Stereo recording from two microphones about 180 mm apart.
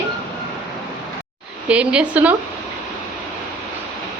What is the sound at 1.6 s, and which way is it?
Speech, 5° right (ahead or behind).